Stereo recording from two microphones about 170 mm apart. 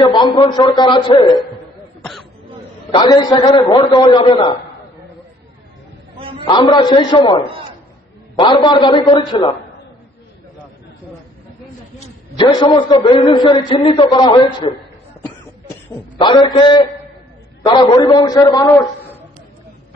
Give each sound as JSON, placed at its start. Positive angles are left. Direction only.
{"t": 0.0, "sound": "a man's voice", "side_deg": 25}
{"t": 2.9, "sound": "a man's voice", "side_deg": 25}
{"t": 6.1, "sound": "a sound", "side_deg": -30}
{"t": 6.4, "sound": "a man's voice", "side_deg": 25}
{"t": 12.6, "sound": "a man's voice", "side_deg": 30}
{"t": 15.9, "sound": "a man's voice", "side_deg": 25}